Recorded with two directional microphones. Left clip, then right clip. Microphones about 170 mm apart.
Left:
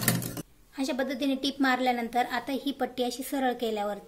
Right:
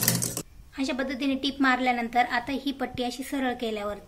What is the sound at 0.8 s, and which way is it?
A woman's voice, 15° left (ahead or behind).